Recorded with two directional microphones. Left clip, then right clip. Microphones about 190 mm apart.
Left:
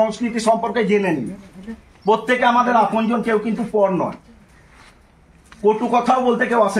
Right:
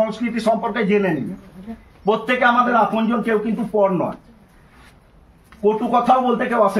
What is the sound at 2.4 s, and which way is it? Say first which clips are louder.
Speech: right 2 dB; 25° right (ahead or behind).